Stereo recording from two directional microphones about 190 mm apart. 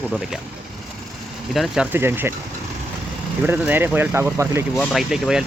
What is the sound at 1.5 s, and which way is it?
Speech, centre (ahead or behind).